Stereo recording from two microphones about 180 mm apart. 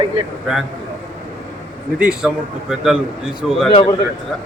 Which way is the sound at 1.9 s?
5° right (ahead or behind).